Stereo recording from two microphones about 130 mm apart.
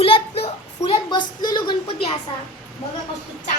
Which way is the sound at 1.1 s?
35° left (ahead or behind).